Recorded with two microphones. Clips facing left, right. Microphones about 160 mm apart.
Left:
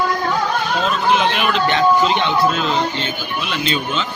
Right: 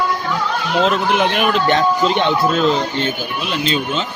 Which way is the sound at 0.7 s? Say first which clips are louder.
Right 4 dB; 70° right (ahead or behind).